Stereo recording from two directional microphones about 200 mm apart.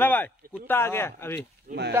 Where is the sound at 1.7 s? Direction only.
40° right (ahead or behind).